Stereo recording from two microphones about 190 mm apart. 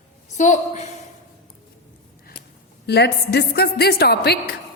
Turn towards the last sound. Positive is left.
turn(degrees=60)  # may be behind; listen again after turning